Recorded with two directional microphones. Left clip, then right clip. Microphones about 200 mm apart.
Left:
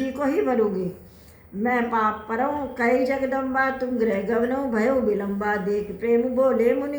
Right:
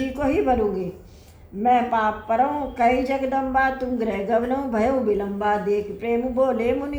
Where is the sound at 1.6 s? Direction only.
35° right (ahead or behind).